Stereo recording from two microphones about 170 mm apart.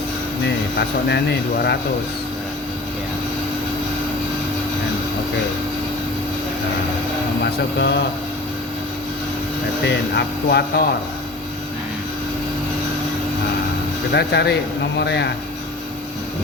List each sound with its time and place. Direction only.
0.4 s speech: 80° left
7.8 s speech: 85° left
9.8 s speech: 75° left (ahead or behind)
14.1 s speech: 75° left (ahead or behind)
14.9 s speech: 90° left